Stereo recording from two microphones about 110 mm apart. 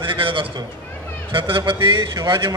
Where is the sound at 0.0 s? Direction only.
50° right (ahead or behind).